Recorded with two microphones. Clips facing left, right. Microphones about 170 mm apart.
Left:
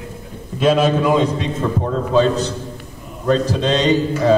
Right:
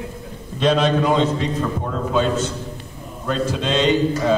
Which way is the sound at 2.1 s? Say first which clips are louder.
Left 4 dB; 35° left (ahead or behind).